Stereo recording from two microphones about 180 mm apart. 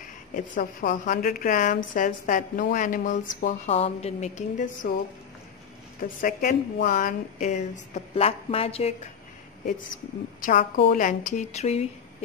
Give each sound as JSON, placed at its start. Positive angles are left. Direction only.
{"t": 0.6, "sound": "a woman's voice", "side_deg": 45}
{"t": 5.9, "sound": "a woman's voice", "side_deg": 50}
{"t": 10.4, "sound": "a woman's voice", "side_deg": 45}